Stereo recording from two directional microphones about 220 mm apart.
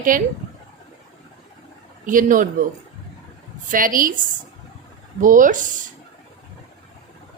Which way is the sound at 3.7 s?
40° right (ahead or behind).